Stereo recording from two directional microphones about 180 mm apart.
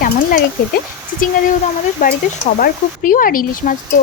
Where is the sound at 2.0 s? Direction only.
50° left (ahead or behind).